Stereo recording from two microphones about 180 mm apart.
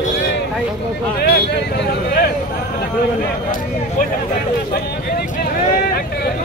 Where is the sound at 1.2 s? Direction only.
60° left (ahead or behind).